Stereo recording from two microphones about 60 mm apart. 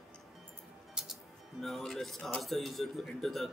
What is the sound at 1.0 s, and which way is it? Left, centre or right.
Music, centre.